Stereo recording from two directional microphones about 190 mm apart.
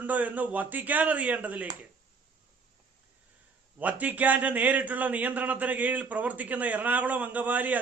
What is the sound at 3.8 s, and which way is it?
A man's voice, 10° right (ahead or behind).